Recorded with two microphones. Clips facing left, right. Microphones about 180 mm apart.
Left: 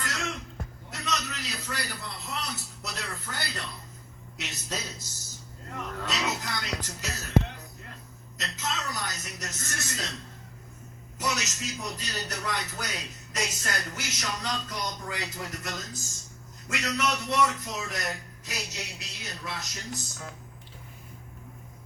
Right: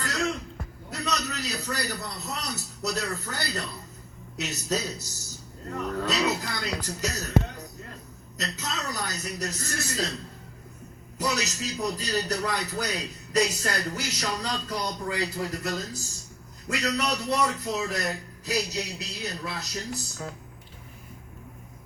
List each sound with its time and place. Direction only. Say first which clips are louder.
0.0 s a sound: right 6 dB; 35° right (ahead or behind)
0.9 s speech: right 3 dB; 35° right (ahead or behind)
11.2 s speech: right 3 dB; 35° right (ahead or behind)